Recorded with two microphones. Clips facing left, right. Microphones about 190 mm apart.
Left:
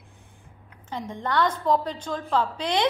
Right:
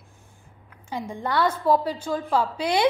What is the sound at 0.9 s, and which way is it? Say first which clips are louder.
A woman's voice: right 1 dB; 10° right (ahead or behind).